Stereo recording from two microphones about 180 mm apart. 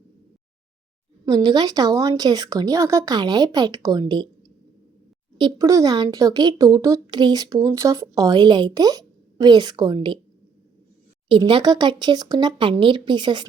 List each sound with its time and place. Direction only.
1.2 s speech: 20° right (ahead or behind)
5.4 s speech: 20° right (ahead or behind)
11.3 s speech: 30° right (ahead or behind)